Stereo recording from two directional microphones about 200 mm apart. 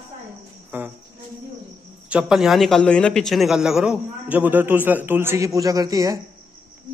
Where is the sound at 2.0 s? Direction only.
5° right (ahead or behind).